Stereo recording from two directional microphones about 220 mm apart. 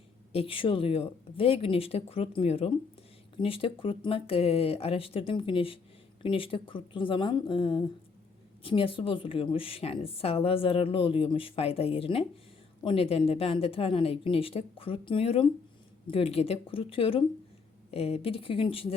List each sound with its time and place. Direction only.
0.3 s a woman's voice: 25° left (ahead or behind)